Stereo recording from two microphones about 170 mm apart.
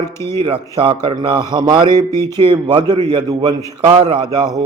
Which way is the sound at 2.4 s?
30° right (ahead or behind).